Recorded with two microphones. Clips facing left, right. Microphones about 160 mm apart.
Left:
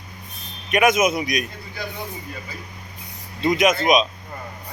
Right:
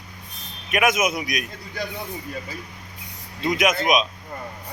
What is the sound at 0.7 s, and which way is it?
Speech, centre (ahead or behind).